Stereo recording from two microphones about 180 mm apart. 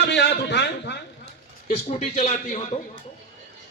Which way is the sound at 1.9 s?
35° left (ahead or behind).